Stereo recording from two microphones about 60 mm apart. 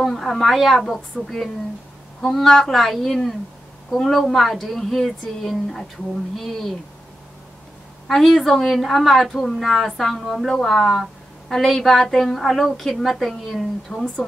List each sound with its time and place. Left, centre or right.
0.0 s a woman's voice: centre
8.1 s a woman's voice: centre
13.9 s speech: centre